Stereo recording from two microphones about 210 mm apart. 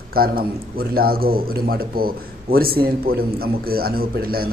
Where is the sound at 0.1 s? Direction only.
45° right (ahead or behind).